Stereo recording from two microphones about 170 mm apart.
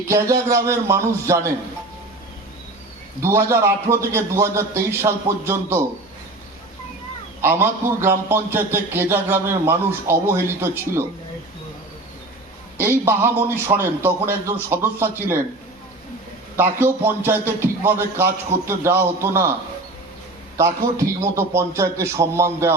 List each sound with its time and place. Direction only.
0.1 s a man's voice: 15° right (ahead or behind)
3.2 s a man's voice: 15° right (ahead or behind)
7.4 s a man's voice: 15° right (ahead or behind)
12.7 s a man's voice: 15° right (ahead or behind)
16.6 s a man's voice: 10° right (ahead or behind)
20.6 s a man's voice: 15° right (ahead or behind)